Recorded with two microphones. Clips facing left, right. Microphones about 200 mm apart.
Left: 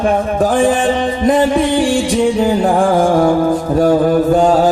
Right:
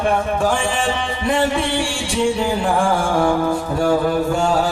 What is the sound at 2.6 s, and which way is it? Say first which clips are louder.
Music: left 6 dB; 40° left (ahead or behind).